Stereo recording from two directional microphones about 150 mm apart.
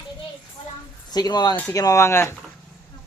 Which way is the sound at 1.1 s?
25° left (ahead or behind).